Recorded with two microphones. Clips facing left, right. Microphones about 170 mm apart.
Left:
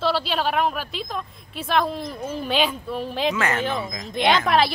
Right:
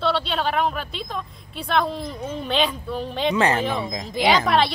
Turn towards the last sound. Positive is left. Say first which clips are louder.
# even
turn(degrees=0)  # may be behind; listen again after turning